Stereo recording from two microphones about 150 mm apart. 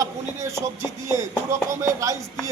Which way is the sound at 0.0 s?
20° right (ahead or behind).